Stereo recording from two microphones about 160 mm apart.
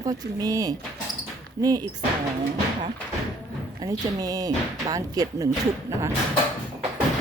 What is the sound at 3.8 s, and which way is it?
Speech, 25° right (ahead or behind).